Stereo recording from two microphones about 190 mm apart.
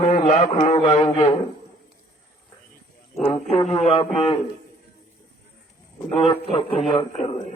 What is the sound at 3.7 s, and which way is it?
Speech, 35° left (ahead or behind).